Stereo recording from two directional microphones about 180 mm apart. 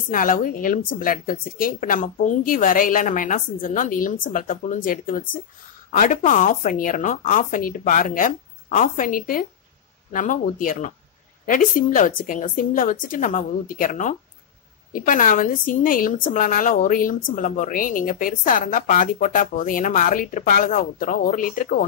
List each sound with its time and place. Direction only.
0.1 s a woman's voice: 50° left (ahead or behind)